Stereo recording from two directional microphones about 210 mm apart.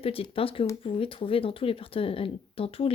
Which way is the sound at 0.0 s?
25° left (ahead or behind).